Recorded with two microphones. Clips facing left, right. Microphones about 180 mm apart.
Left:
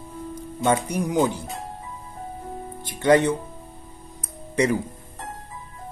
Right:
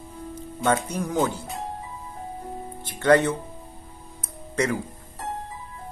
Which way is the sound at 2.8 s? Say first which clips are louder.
Left 1 dB; 15° left (ahead or behind).